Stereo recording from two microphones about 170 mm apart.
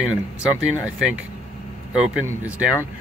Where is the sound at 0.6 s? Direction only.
5° right (ahead or behind).